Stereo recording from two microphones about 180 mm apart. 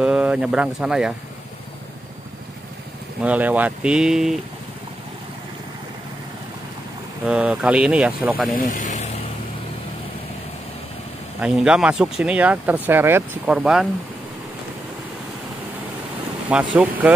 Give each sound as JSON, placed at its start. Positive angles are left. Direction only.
{"t": 0.0, "sound": "speech", "side_deg": -5}
{"t": 3.2, "sound": "speech", "side_deg": -10}
{"t": 7.2, "sound": "speech", "side_deg": -5}
{"t": 8.5, "sound": "speech", "side_deg": 45}
{"t": 11.3, "sound": "speech", "side_deg": -5}
{"t": 16.4, "sound": "speech", "side_deg": -5}